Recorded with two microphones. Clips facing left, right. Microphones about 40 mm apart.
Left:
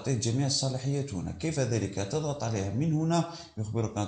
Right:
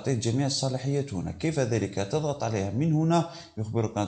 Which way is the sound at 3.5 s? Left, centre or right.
Right.